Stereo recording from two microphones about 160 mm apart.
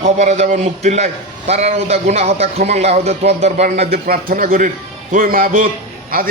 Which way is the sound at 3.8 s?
75° right (ahead or behind).